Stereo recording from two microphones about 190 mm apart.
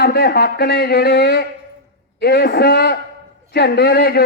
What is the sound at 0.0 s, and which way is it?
A man's voice, 55° left (ahead or behind).